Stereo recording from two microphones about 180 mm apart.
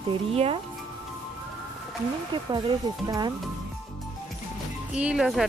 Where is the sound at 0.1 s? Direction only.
30° right (ahead or behind).